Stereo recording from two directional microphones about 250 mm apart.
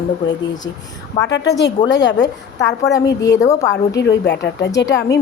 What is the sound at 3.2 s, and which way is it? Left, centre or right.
Speech, centre.